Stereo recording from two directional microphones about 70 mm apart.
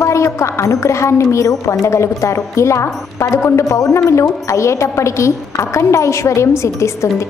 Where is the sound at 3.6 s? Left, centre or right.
Left.